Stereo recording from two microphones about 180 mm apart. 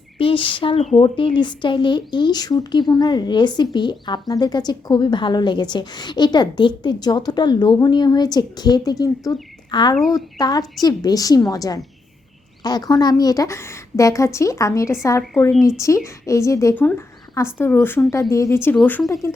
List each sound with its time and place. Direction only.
0.2 s speech: 30° left (ahead or behind)
9.9 s a woman's voice: centre (ahead or behind)
10.3 s a woman's voice: 20° left (ahead or behind)
16.0 s a woman's voice: 15° left (ahead or behind)